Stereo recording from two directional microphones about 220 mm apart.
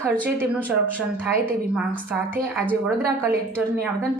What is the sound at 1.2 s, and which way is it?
Speech, 10° right (ahead or behind).